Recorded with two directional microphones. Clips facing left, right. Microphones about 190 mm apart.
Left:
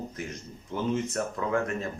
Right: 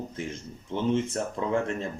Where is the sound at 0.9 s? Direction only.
25° right (ahead or behind).